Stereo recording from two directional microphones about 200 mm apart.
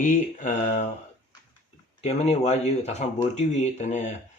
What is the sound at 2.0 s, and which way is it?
Speech, 35° left (ahead or behind).